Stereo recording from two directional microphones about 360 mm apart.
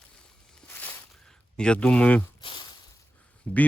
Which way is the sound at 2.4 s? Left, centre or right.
Centre.